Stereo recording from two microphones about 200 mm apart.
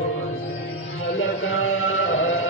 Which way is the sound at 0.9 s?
90° left.